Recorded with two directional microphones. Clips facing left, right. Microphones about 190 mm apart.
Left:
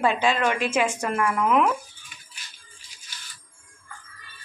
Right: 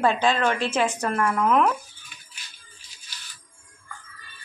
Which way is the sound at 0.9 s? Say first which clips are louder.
Right 1 dB; 10° left (ahead or behind).